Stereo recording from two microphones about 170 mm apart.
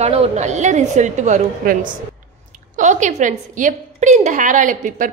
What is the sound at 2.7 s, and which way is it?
A woman's voice, 45° right (ahead or behind).